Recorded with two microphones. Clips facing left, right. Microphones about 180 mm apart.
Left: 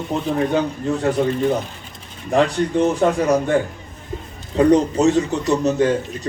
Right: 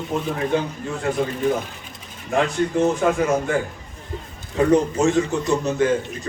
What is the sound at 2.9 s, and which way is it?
A man's voice, 35° left (ahead or behind).